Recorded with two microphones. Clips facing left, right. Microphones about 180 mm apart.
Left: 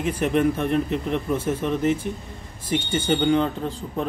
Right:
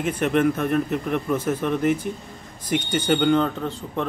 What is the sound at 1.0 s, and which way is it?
Speech, 30° left (ahead or behind).